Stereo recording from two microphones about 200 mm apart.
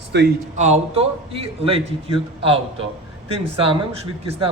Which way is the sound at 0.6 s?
35° right (ahead or behind).